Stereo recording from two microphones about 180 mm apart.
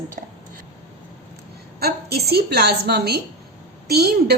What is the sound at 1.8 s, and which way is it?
A woman's voice, 60° right (ahead or behind).